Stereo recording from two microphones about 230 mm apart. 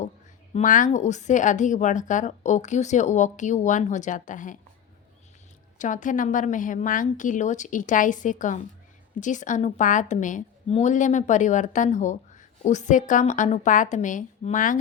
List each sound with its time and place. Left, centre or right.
0.5 s a woman's voice: left
5.8 s a woman's voice: left